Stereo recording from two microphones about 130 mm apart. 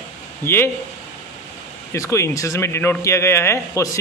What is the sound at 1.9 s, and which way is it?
A man's voice, 25° left (ahead or behind).